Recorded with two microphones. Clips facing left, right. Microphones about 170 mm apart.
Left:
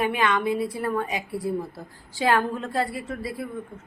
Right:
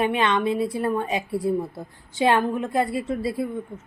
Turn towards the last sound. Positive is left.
turn(degrees=-25)  # may be behind; listen again after turning